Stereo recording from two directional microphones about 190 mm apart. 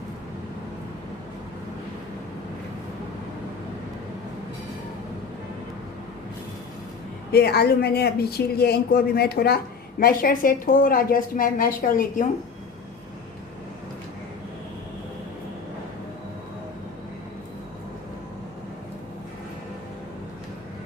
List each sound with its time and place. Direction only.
7.3 s a woman's voice: 55° left (ahead or behind)